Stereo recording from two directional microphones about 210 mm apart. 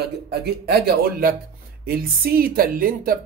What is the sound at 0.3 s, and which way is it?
A woman's voice, 50° right (ahead or behind).